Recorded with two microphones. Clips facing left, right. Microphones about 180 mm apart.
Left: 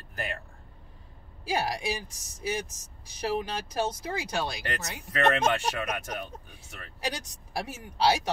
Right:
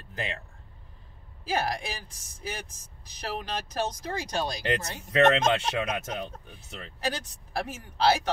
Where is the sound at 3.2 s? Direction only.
10° left (ahead or behind).